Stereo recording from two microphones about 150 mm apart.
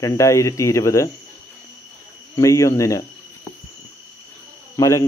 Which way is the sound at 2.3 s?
20° left (ahead or behind).